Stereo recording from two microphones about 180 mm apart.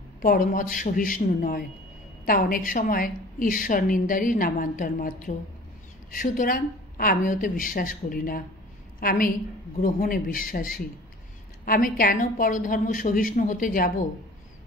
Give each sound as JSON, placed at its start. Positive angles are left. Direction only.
{"t": 0.2, "sound": "a woman's voice", "side_deg": 50}